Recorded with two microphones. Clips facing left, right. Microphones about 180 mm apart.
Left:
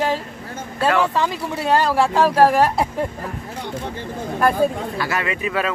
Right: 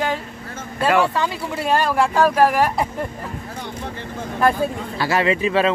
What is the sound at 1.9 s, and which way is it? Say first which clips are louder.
Speech: even; 30° left (ahead or behind).